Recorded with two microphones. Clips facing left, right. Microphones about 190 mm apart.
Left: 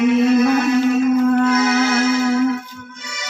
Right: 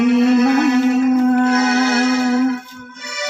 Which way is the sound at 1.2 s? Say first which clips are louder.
Right 1 dB; 40° right (ahead or behind).